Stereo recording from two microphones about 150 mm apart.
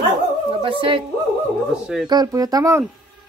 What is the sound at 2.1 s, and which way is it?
Speech, 25° right (ahead or behind).